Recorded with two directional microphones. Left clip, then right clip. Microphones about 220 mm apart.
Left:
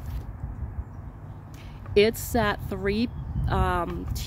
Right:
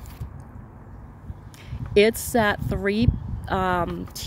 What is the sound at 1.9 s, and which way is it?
Speech, 25° right (ahead or behind).